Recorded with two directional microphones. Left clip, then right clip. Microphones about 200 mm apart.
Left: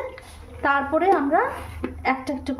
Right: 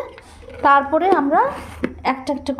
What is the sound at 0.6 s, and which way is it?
A woman's voice, 25° right (ahead or behind).